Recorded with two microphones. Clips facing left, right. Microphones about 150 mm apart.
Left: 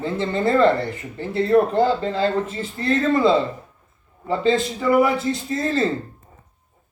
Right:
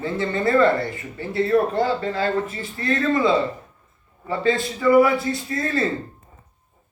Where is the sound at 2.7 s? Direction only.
30° left (ahead or behind).